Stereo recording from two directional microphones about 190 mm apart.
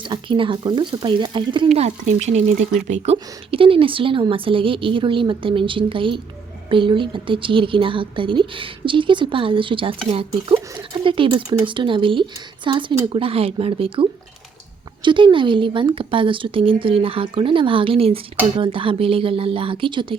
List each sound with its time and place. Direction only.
0.0 s speech: 25° right (ahead or behind)